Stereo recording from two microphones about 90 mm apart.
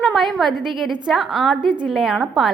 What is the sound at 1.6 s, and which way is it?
Speech, 60° right (ahead or behind).